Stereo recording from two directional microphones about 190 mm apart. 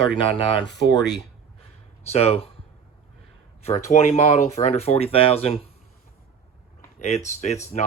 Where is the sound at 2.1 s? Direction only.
30° left (ahead or behind).